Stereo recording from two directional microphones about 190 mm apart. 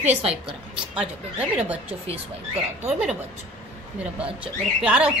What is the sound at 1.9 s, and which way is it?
Speech, 35° right (ahead or behind).